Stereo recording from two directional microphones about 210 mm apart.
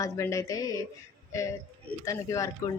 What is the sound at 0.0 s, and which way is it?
Speech, 15° left (ahead or behind).